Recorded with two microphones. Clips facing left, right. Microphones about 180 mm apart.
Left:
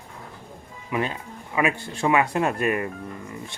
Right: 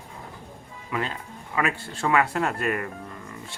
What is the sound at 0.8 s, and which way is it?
Speech, 20° left (ahead or behind).